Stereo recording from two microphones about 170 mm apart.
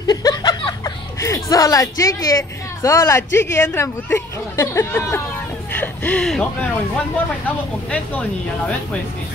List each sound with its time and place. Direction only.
0.0 s speech: 25° left (ahead or behind)
5.7 s a sound: 10° left (ahead or behind)
7.4 s speech: 10° left (ahead or behind)